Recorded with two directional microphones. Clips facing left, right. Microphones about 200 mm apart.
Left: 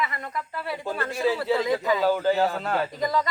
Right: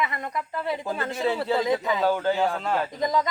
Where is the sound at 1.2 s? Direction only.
5° left (ahead or behind).